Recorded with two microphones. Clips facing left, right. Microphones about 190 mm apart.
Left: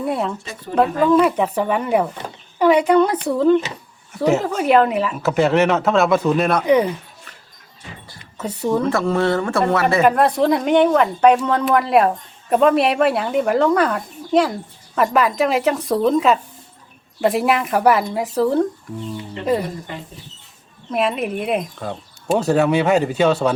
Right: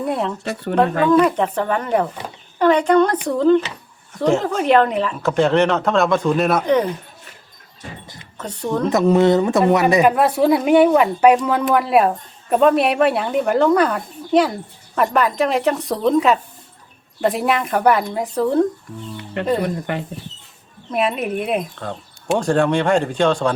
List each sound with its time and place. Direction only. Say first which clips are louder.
0.0 s speech: even; centre (ahead or behind)
0.4 s speech: right 6 dB; 70° right (ahead or behind)
1.0 s speech: even; 5° left (ahead or behind)
6.7 s speech: left 5 dB; 10° left (ahead or behind)
8.0 s music: right 2 dB; 20° right (ahead or behind)
8.4 s speech: left 3 dB; 10° left (ahead or behind)
8.9 s speech: right 4 dB; 20° right (ahead or behind)
10.1 s speech: right 1 dB; 5° right (ahead or behind)
19.4 s speech: right 1 dB; 70° right (ahead or behind)
20.9 s speech: even; centre (ahead or behind)